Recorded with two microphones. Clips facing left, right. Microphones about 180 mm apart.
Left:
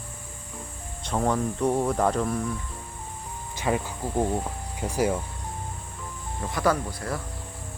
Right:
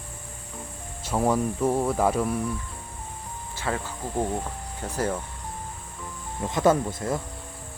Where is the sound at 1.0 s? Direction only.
10° right (ahead or behind).